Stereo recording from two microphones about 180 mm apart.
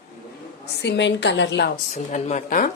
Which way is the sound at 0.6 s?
70° left (ahead or behind).